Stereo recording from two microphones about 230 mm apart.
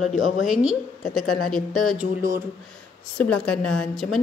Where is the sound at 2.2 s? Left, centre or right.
Centre.